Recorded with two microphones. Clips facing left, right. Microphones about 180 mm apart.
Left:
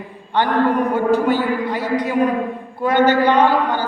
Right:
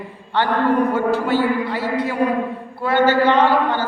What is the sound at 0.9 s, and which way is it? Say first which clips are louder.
Speech: left 2 dB; 15° left (ahead or behind).